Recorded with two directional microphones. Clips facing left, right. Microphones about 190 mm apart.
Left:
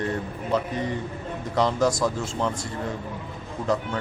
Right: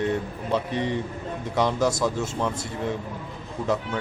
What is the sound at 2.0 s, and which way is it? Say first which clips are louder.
Speech: even; 10° right (ahead or behind).